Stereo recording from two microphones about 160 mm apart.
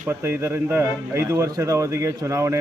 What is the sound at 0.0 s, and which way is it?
Speech, 15° right (ahead or behind).